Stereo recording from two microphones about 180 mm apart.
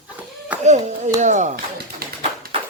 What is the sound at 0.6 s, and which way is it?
Clapping, 40° right (ahead or behind).